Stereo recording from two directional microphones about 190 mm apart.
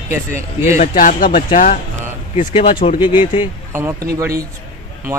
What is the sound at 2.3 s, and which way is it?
Speech, 30° left (ahead or behind).